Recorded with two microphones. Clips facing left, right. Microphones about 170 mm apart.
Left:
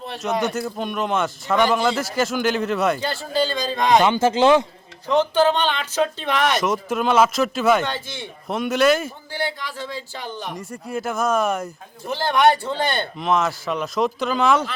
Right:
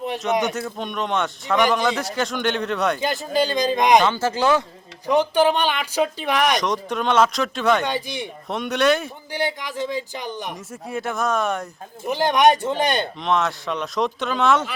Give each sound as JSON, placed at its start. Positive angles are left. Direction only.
{"t": 0.4, "sound": "speech", "side_deg": 0}
{"t": 3.0, "sound": "speech", "side_deg": -20}
{"t": 4.0, "sound": "speech", "side_deg": 20}
{"t": 5.0, "sound": "speech", "side_deg": -15}
{"t": 6.6, "sound": "speech", "side_deg": 5}
{"t": 7.9, "sound": "speech", "side_deg": -15}
{"t": 8.4, "sound": "speech", "side_deg": 0}
{"t": 9.3, "sound": "speech", "side_deg": -15}
{"t": 10.5, "sound": "speech", "side_deg": 0}
{"t": 12.0, "sound": "speech", "side_deg": -15}
{"t": 13.1, "sound": "speech", "side_deg": 0}